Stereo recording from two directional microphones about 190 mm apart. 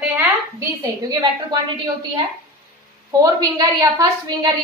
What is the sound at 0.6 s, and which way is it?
A woman's voice, 20° right (ahead or behind).